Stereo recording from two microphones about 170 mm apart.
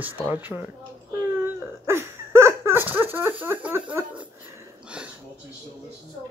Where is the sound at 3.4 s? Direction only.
10° right (ahead or behind).